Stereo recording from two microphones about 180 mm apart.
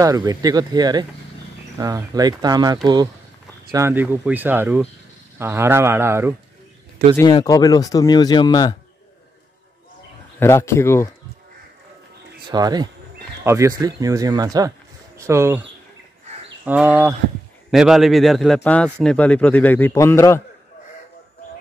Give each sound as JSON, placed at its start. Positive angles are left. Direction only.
{"t": 0.0, "sound": "speech", "side_deg": -20}
{"t": 3.7, "sound": "speech", "side_deg": -15}
{"t": 7.2, "sound": "speech", "side_deg": 20}
{"t": 10.4, "sound": "a man's voice", "side_deg": 15}
{"t": 12.4, "sound": "speech", "side_deg": -20}
{"t": 16.6, "sound": "a man's voice", "side_deg": -10}